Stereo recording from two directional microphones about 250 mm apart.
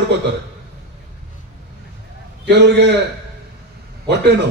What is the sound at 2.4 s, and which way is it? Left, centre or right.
Speech, right.